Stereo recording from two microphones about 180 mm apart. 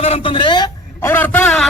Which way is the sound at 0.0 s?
30° left (ahead or behind).